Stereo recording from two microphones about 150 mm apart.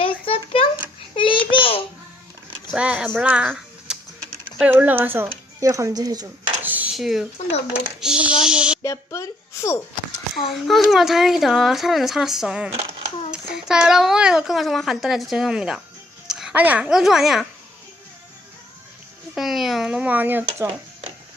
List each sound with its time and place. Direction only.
0.0 s a sound: 35° left (ahead or behind)
1.5 s babbling: 35° left (ahead or behind)
2.7 s speech: 5° right (ahead or behind); by 6.2 s 25° right (ahead or behind)
6.6 s a sound: 10° right (ahead or behind)
6.9 s a child's voice: centre (ahead or behind)
7.7 s hands: 5° right (ahead or behind)
8.8 s speech: 20° left (ahead or behind)
10.3 s a child's voice: centre (ahead or behind)
19.3 s speech: centre (ahead or behind)